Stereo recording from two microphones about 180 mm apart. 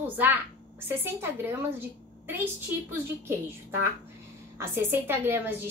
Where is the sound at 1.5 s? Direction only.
15° right (ahead or behind).